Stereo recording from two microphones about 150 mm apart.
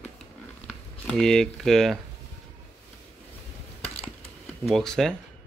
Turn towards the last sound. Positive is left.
turn(degrees=5)  # may be behind; listen again after turning